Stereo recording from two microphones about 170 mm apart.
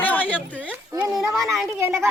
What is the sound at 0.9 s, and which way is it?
Speech, 20° right (ahead or behind).